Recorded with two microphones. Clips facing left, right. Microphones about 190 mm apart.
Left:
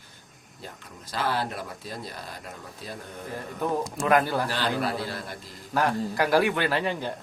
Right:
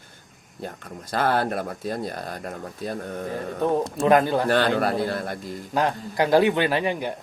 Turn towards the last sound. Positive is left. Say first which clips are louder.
# right 3 dB
turn(degrees=-15)  # may be behind; listen again after turning